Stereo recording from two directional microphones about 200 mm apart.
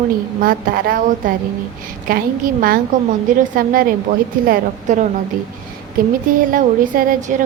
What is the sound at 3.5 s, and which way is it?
A woman's voice, 45° right (ahead or behind).